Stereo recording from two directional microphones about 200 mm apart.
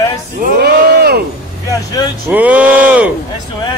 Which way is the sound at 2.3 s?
5° right (ahead or behind).